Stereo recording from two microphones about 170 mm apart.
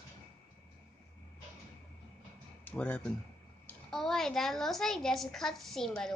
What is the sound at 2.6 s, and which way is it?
A woman's voice, 10° left (ahead or behind).